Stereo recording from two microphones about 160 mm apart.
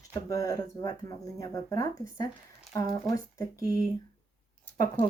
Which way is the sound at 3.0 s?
20° left (ahead or behind).